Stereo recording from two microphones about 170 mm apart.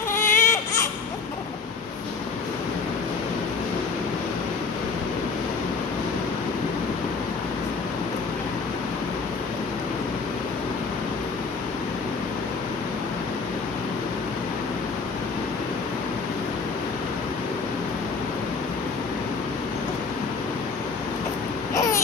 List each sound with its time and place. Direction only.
0.1 s baby cry: 15° left (ahead or behind)